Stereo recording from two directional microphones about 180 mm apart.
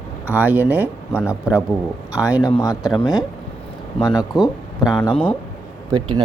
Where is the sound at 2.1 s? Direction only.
5° right (ahead or behind).